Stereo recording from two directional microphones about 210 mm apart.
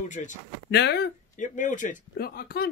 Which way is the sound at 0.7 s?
55° left (ahead or behind).